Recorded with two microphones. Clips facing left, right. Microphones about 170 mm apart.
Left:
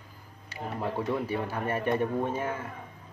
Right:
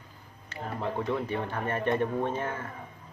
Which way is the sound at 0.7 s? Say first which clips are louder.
Even; 10° left (ahead or behind).